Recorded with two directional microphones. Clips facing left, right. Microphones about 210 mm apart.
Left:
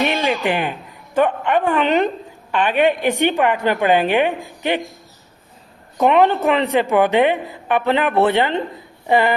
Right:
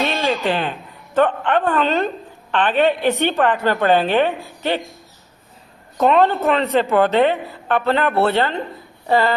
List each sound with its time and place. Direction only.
0.0 s a woman's voice: 15° left (ahead or behind)
6.0 s a woman's voice: 15° left (ahead or behind)